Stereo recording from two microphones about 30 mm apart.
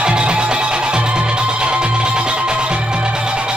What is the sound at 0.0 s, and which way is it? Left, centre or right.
Music, right.